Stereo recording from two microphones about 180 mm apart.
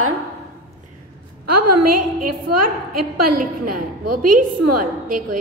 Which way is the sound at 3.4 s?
50° right (ahead or behind).